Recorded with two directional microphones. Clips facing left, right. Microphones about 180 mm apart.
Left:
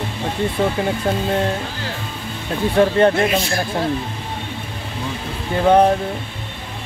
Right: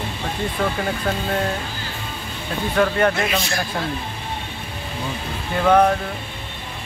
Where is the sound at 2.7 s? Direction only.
30° left (ahead or behind).